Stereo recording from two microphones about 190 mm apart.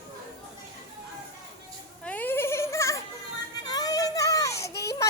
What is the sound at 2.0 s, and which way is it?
Goat, 10° left (ahead or behind).